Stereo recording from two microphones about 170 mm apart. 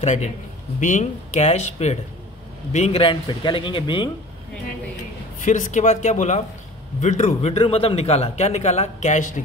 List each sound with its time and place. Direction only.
0.0 s speech: 40° left (ahead or behind)
5.4 s a man's voice: 45° left (ahead or behind)